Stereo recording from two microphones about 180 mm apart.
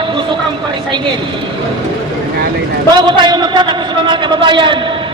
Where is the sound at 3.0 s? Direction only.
25° right (ahead or behind).